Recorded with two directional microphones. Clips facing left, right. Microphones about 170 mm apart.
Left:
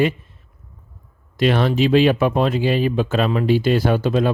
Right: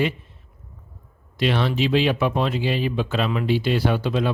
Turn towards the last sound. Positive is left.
turn(degrees=45)  # may be behind; listen again after turning